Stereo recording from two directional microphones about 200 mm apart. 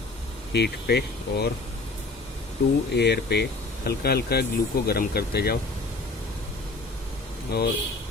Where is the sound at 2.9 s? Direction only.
55° left (ahead or behind).